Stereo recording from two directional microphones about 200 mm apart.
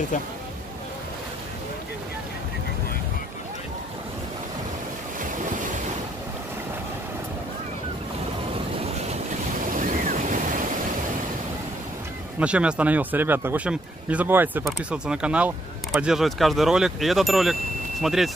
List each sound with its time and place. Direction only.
9.8 s waves: 40° right (ahead or behind)
12.4 s speech: 5° right (ahead or behind)